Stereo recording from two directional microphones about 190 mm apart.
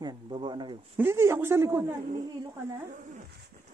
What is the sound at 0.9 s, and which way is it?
A man's voice, 15° right (ahead or behind).